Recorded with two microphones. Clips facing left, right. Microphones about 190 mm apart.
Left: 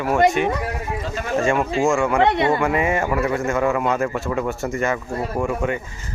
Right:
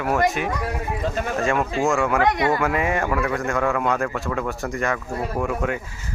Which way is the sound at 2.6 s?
Centre (ahead or behind).